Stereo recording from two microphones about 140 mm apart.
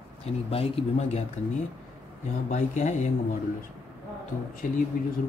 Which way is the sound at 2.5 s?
55° left (ahead or behind).